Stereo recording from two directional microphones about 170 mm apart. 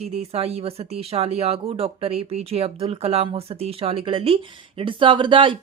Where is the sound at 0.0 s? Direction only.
40° right (ahead or behind).